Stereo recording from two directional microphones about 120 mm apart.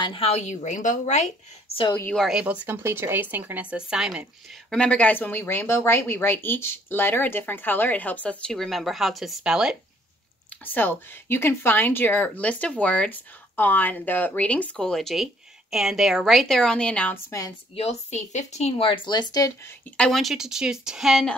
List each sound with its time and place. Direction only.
0.0 s speech: 50° left (ahead or behind)
0.4 s speech: 75° left (ahead or behind)
2.1 s a woman's voice: centre (ahead or behind)
2.4 s speech: 15° right (ahead or behind)
4.6 s speech: 5° left (ahead or behind)
10.6 s a woman's voice: 15° left (ahead or behind)
17.7 s speech: 60° left (ahead or behind); by 19.9 s 20° left (ahead or behind)
20.0 s a woman's voice: centre (ahead or behind)